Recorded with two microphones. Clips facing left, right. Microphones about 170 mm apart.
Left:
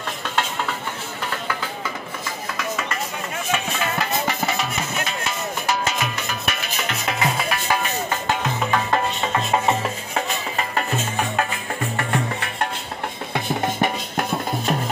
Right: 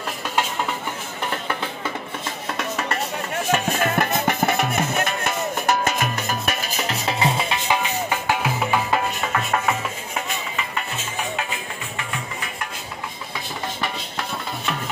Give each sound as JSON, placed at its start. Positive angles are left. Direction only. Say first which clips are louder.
{"t": 1.3, "sound": "music", "louder": "right 1 dB", "side_deg": -25}
{"t": 2.7, "sound": "a sound", "louder": "right 1 dB", "side_deg": -35}
{"t": 3.5, "sound": "music", "louder": "right 4 dB", "side_deg": -45}
{"t": 9.2, "sound": "music", "louder": "left 2 dB", "side_deg": 25}
{"t": 10.5, "sound": "music", "louder": "left 5 dB", "side_deg": 45}
{"t": 13.3, "sound": "music", "louder": "left 9 dB", "side_deg": 55}